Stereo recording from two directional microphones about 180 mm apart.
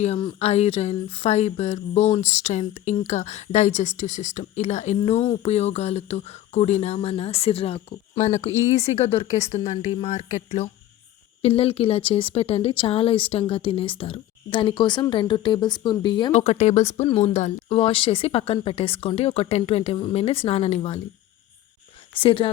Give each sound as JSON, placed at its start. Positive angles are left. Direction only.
{"t": 0.0, "sound": "speech", "side_deg": 30}
{"t": 16.3, "sound": "speech", "side_deg": 40}
{"t": 22.1, "sound": "speech", "side_deg": 30}